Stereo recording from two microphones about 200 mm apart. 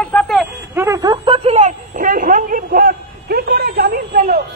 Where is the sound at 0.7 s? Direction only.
15° right (ahead or behind).